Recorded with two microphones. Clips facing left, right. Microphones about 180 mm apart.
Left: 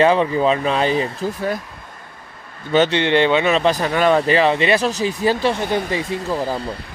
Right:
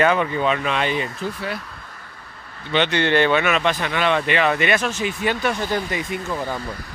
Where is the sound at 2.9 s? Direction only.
20° left (ahead or behind).